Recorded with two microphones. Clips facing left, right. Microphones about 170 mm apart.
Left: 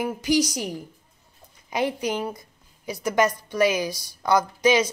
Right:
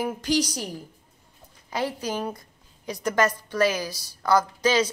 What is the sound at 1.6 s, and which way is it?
Speech, 15° left (ahead or behind).